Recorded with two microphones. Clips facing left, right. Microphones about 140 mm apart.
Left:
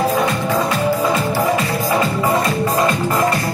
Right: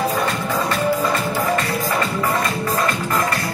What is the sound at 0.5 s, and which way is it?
Music, centre (ahead or behind).